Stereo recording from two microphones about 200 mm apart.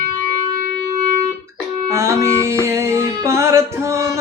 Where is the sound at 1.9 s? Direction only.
15° right (ahead or behind).